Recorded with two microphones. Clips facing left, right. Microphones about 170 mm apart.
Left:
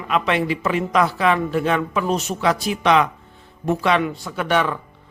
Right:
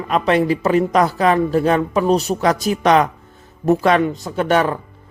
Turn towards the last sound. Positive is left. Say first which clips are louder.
# right 4 dB
turn(degrees=-45)  # may be behind; listen again after turning